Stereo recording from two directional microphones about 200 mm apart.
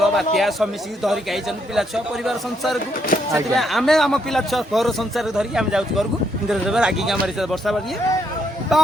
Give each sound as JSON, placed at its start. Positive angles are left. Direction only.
{"t": 0.0, "sound": "a man's voice", "side_deg": 0}
{"t": 3.1, "sound": "speech", "side_deg": 45}
{"t": 3.5, "sound": "a man's voice", "side_deg": 0}